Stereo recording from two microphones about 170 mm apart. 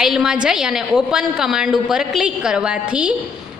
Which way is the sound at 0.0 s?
5° right (ahead or behind).